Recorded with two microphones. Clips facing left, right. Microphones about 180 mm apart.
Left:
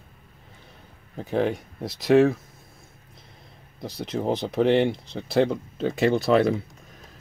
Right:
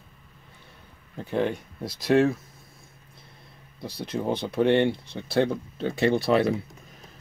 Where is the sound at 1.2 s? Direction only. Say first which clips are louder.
Left 2 dB; 5° left (ahead or behind).